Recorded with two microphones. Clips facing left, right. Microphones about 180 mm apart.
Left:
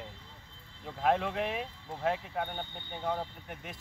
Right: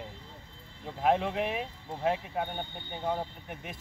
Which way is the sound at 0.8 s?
15° right (ahead or behind).